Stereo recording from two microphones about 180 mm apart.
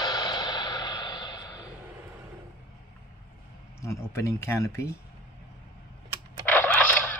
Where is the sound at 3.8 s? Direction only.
15° left (ahead or behind).